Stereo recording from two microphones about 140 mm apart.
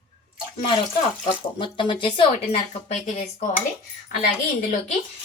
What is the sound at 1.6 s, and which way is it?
Speech, 35° left (ahead or behind).